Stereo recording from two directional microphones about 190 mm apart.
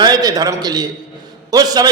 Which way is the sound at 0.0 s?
20° right (ahead or behind).